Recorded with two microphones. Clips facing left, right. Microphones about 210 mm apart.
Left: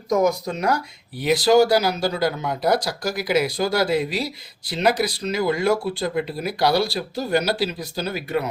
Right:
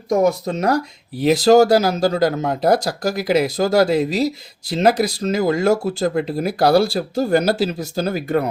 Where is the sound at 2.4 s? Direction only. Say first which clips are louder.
Right 5 dB; 25° right (ahead or behind).